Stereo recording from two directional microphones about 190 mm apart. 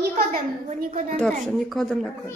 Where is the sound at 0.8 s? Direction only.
50° right (ahead or behind).